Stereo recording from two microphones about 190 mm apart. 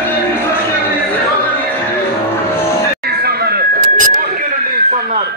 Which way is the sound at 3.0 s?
55° right (ahead or behind).